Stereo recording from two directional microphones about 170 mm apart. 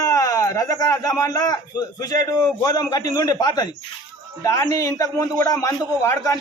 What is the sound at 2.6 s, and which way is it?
A man's voice, 20° left (ahead or behind).